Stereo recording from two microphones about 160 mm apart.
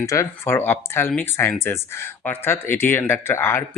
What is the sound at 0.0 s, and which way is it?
Speech, 20° left (ahead or behind).